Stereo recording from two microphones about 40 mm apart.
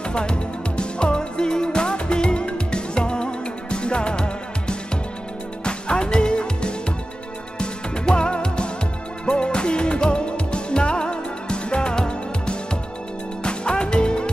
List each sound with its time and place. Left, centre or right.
0.1 s music: left